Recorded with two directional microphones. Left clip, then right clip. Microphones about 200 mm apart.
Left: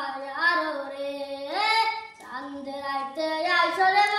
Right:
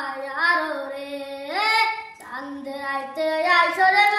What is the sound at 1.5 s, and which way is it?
Child singing, centre (ahead or behind).